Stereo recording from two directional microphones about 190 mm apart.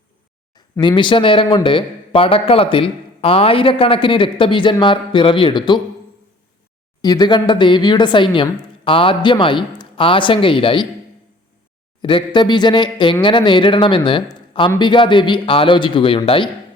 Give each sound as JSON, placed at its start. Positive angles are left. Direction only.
{"t": 0.5, "sound": "speech", "side_deg": 20}
{"t": 7.0, "sound": "speech", "side_deg": 20}
{"t": 12.0, "sound": "speech", "side_deg": 25}